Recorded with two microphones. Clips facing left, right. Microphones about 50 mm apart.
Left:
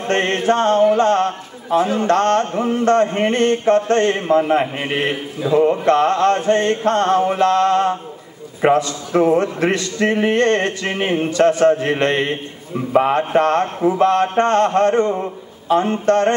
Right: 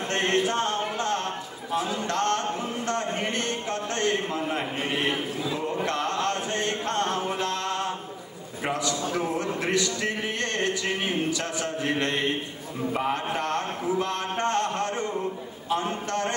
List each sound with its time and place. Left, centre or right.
0.1 s speech: left